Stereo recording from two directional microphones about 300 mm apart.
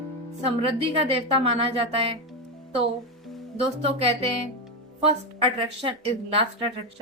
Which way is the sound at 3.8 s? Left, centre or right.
Centre.